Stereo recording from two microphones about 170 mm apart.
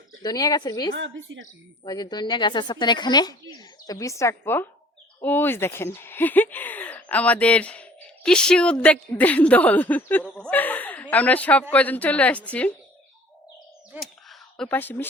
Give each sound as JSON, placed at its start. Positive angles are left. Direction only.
{"t": 0.2, "sound": "speech", "side_deg": 25}
{"t": 1.3, "sound": "speech", "side_deg": -90}
{"t": 1.8, "sound": "speech", "side_deg": 25}
{"t": 14.0, "sound": "a sound", "side_deg": 0}